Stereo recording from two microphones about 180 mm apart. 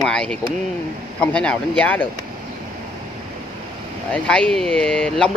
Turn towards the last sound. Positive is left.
turn(degrees=5)  # may be behind; listen again after turning